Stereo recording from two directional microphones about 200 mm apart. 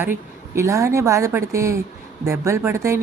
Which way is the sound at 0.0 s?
10° right (ahead or behind).